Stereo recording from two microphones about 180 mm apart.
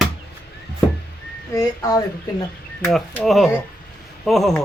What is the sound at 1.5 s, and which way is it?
Speech, 15° left (ahead or behind).